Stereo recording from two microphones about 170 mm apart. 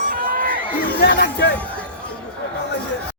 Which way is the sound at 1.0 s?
75° left (ahead or behind).